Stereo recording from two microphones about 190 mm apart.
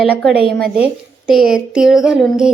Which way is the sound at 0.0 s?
5° left (ahead or behind).